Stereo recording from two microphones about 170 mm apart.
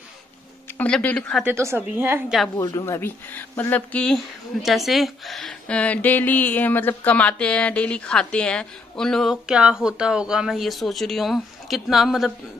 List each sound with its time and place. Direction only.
0.7 s speech: 5° left (ahead or behind)
1.4 s a woman's voice: 15° right (ahead or behind)
2.5 s speech: 20° left (ahead or behind); by 12.3 s centre (ahead or behind)